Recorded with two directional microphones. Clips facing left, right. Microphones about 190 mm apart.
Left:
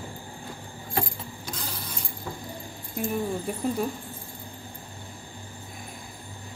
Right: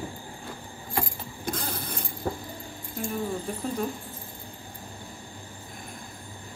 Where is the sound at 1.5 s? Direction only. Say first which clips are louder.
Right 7 dB; 55° right (ahead or behind).